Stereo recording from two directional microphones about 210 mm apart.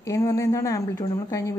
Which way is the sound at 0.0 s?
15° left (ahead or behind).